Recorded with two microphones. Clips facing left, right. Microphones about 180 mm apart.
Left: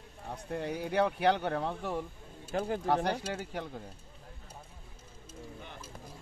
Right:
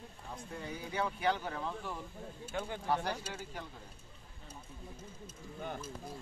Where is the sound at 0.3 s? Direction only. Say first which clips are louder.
Left 8 dB; 65° left (ahead or behind).